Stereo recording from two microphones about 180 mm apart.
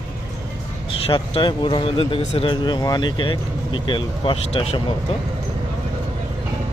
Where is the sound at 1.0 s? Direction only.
30° left (ahead or behind).